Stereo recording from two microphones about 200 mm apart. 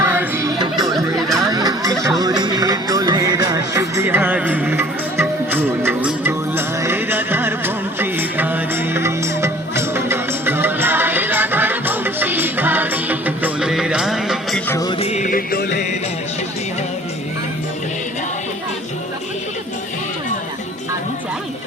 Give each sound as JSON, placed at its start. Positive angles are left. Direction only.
{"t": 0.0, "sound": "music", "side_deg": -10}
{"t": 1.1, "sound": "a sound", "side_deg": 0}
{"t": 1.5, "sound": "a sound", "side_deg": -20}
{"t": 2.0, "sound": "music", "side_deg": -20}
{"t": 14.7, "sound": "music", "side_deg": 15}
{"t": 14.9, "sound": "music", "side_deg": 35}